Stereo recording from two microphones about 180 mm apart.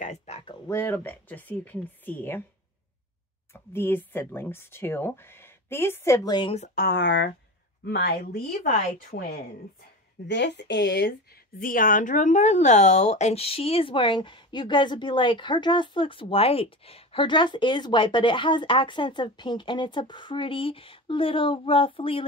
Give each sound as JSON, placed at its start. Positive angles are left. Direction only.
{"t": 0.0, "sound": "a sound", "side_deg": 40}
{"t": 0.5, "sound": "speech", "side_deg": 15}
{"t": 3.7, "sound": "speech", "side_deg": 10}
{"t": 6.7, "sound": "speech", "side_deg": 65}
{"t": 7.8, "sound": "speech", "side_deg": 65}
{"t": 10.2, "sound": "speech", "side_deg": 75}
{"t": 11.6, "sound": "speech", "side_deg": 50}